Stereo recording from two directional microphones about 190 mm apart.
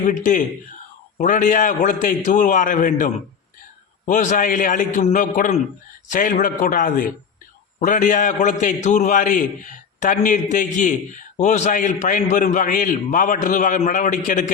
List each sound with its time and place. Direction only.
0.0 s a man's voice: 40° left (ahead or behind)